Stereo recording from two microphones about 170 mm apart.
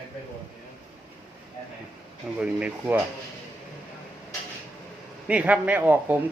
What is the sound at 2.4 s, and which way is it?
Speech, 5° right (ahead or behind).